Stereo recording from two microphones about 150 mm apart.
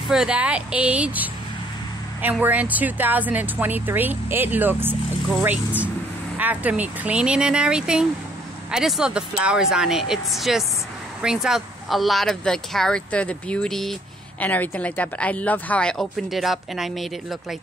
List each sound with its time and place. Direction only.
0.1 s speech: 5° right (ahead or behind)
2.4 s speech: 10° right (ahead or behind)